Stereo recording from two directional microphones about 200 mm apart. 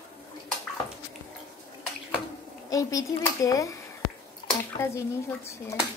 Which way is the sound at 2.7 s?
15° left (ahead or behind).